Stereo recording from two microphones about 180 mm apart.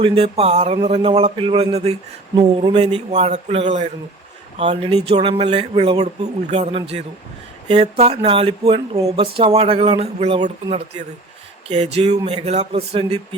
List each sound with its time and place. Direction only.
0.0 s speech: 30° right (ahead or behind)
9.0 s speech: 20° right (ahead or behind)
9.2 s speech: 30° right (ahead or behind)